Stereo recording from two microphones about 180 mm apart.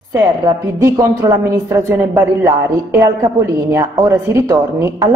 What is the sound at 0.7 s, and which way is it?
A woman's voice, 20° right (ahead or behind).